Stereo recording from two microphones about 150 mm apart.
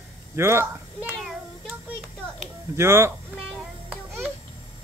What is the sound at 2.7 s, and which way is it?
Speech, 15° right (ahead or behind).